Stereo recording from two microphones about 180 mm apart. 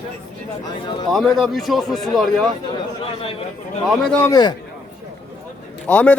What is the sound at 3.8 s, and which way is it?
Speech, centre (ahead or behind).